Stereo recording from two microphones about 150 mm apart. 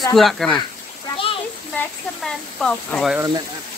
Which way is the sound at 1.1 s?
35° left (ahead or behind).